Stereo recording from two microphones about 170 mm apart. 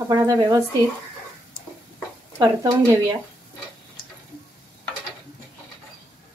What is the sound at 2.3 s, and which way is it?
Speech, 20° right (ahead or behind).